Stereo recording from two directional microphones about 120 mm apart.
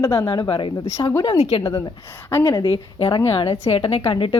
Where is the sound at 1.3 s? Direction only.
65° left (ahead or behind).